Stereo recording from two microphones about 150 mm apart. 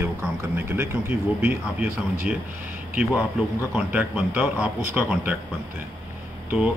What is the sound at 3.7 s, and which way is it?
Speech, 10° right (ahead or behind).